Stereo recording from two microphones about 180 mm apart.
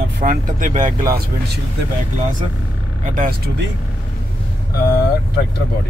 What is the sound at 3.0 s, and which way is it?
Speech, 50° right (ahead or behind).